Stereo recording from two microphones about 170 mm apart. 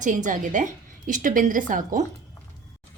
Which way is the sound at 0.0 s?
50° right (ahead or behind).